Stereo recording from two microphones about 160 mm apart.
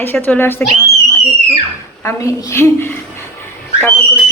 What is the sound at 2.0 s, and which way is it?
Speech, 20° left (ahead or behind).